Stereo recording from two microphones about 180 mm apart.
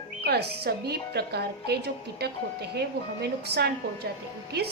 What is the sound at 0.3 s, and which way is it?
A woman's voice, 65° right (ahead or behind).